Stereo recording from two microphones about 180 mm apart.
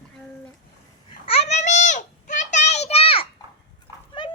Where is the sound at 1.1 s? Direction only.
30° left (ahead or behind).